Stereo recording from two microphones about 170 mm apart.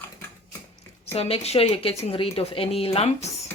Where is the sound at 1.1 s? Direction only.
35° left (ahead or behind).